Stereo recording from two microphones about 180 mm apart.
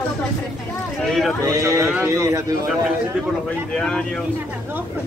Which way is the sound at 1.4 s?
15° right (ahead or behind).